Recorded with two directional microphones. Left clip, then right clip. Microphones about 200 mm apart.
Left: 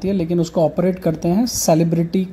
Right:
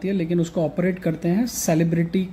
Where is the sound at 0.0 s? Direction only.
15° left (ahead or behind).